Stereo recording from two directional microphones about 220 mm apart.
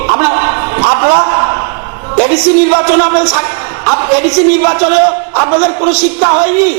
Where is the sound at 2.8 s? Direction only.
25° right (ahead or behind).